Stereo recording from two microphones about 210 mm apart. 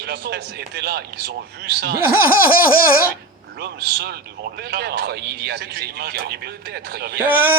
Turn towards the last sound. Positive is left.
turn(degrees=-10)  # may be behind; listen again after turning